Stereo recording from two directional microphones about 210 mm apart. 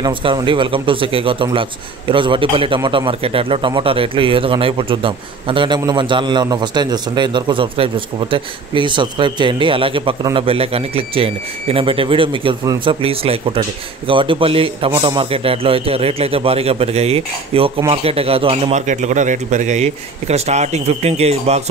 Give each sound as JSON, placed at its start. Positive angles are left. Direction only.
{"t": 0.0, "sound": "speech", "side_deg": -25}